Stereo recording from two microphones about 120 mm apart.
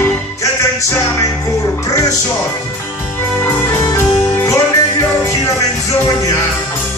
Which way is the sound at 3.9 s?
25° left (ahead or behind).